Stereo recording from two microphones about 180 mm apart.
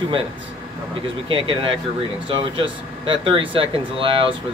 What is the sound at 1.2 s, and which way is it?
Speech, 30° right (ahead or behind).